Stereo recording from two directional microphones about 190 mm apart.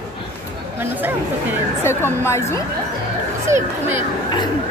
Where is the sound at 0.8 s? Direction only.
10° right (ahead or behind).